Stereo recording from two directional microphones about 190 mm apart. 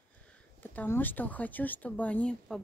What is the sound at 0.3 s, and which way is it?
Speech, 10° left (ahead or behind).